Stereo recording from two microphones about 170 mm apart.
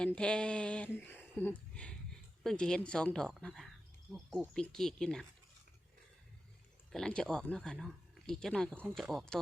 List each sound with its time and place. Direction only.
0.0 s speech: 5° left (ahead or behind)
6.9 s speech: 5° left (ahead or behind)